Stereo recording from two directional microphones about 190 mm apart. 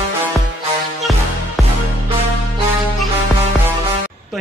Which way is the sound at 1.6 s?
Centre (ahead or behind).